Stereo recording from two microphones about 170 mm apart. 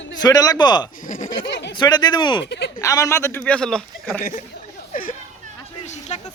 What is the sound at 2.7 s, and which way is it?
Speech, 20° left (ahead or behind).